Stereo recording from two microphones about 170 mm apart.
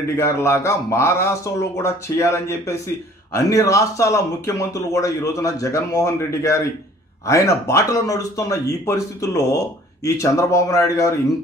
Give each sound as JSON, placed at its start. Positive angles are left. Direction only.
{"t": 0.1, "sound": "a man's voice", "side_deg": 15}